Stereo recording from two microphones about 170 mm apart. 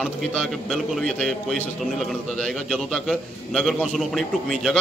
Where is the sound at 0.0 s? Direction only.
Centre (ahead or behind).